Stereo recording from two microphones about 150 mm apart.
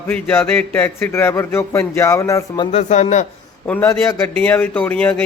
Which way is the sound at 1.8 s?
15° left (ahead or behind).